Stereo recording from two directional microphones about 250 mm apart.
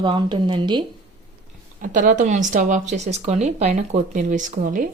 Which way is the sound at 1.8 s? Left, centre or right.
Right.